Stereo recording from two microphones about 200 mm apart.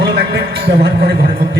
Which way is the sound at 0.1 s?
55° right (ahead or behind).